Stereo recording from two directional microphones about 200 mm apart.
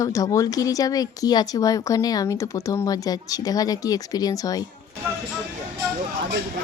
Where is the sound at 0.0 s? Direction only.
15° left (ahead or behind).